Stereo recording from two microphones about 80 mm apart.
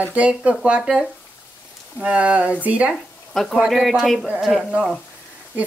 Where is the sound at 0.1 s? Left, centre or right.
Centre.